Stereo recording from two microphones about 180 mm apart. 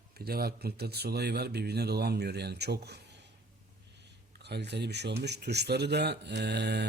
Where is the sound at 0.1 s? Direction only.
55° right (ahead or behind).